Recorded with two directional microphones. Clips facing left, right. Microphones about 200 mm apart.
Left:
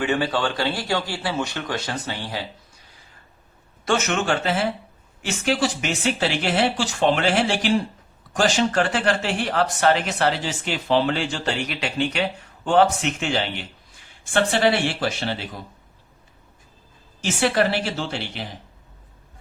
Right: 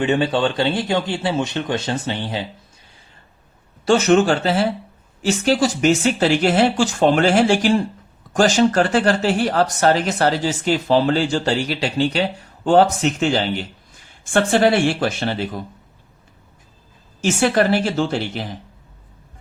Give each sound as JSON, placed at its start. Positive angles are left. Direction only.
{"t": 0.0, "sound": "speech", "side_deg": -25}
{"t": 3.8, "sound": "speech", "side_deg": -35}
{"t": 17.2, "sound": "speech", "side_deg": -45}